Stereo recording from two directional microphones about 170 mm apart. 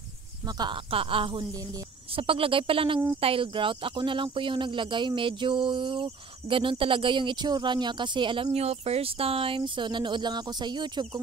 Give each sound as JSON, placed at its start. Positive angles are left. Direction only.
{"t": 0.6, "sound": "speech", "side_deg": -30}